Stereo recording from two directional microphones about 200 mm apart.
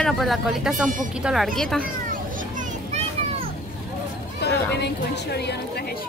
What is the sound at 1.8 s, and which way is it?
Children playing, 40° right (ahead or behind).